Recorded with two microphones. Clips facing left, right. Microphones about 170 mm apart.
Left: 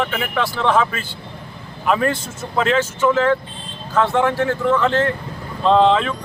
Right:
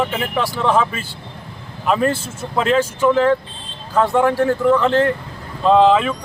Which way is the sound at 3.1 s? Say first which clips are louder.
Right 3 dB; 35° right (ahead or behind).